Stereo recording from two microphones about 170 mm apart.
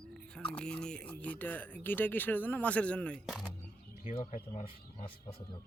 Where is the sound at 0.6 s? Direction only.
5° left (ahead or behind).